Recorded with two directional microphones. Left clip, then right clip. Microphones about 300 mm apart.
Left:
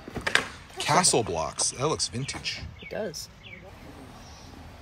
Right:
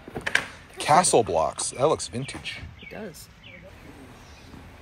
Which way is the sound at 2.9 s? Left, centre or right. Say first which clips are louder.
Left 6 dB; left.